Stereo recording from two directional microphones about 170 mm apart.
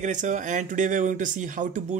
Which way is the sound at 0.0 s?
45° right (ahead or behind).